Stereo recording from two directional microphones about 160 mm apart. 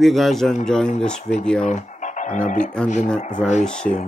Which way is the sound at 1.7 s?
50° left (ahead or behind).